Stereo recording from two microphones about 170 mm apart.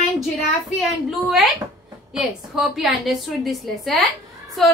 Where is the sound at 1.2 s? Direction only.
Centre (ahead or behind).